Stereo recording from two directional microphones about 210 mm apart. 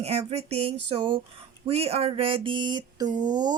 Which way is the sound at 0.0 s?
30° right (ahead or behind).